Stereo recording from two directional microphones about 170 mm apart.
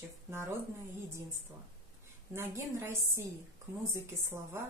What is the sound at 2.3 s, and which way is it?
A woman's voice, 15° right (ahead or behind).